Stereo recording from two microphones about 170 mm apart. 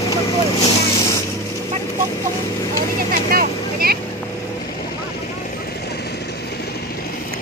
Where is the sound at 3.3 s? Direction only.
60° right (ahead or behind).